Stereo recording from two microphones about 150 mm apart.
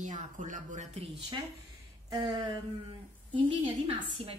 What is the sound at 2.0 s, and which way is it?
A woman's voice, 25° right (ahead or behind).